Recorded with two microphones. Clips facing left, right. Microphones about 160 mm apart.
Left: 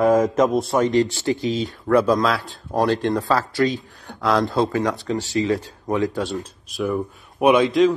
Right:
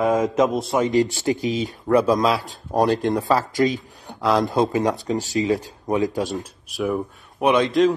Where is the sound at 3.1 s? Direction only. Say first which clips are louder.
Right 1 dB; 15° right (ahead or behind).